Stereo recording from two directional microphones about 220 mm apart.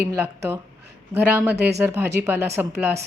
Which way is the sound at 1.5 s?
45° right (ahead or behind).